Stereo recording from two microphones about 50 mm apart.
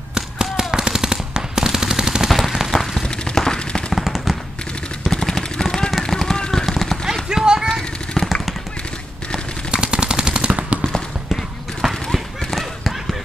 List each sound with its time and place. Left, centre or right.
0.1 s machine gun: centre
2.3 s a sound: centre
2.7 s a sound: centre
3.9 s machine gun: centre
5.0 s machine gun: centre
7.2 s clip-clop: centre
8.1 s machine gun: centre
9.7 s machine gun: centre
11.8 s horse: centre
12.4 s run: centre